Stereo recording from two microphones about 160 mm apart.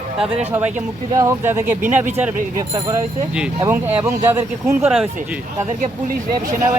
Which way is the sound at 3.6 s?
10° right (ahead or behind).